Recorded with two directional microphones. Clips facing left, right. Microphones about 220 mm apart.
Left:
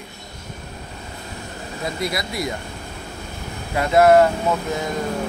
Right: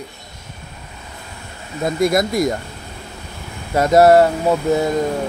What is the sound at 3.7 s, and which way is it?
Speech, 40° right (ahead or behind).